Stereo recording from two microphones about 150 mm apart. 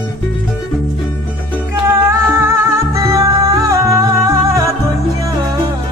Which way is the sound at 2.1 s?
20° right (ahead or behind).